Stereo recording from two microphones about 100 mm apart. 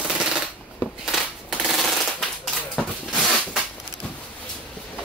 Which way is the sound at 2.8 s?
5° left (ahead or behind).